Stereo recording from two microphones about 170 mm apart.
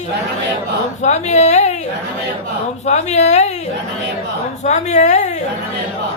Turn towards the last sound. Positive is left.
turn(degrees=45)  # may be behind; listen again after turning